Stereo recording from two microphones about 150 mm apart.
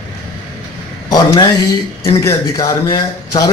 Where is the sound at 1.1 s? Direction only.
25° left (ahead or behind).